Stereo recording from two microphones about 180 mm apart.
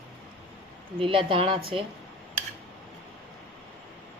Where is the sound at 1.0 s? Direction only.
30° right (ahead or behind).